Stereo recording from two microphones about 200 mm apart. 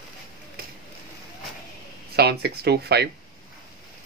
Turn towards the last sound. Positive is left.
turn(degrees=-55)  # may be behind; listen again after turning